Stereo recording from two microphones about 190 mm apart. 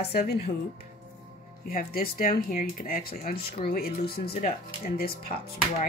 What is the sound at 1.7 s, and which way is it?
Speech, 50° left (ahead or behind).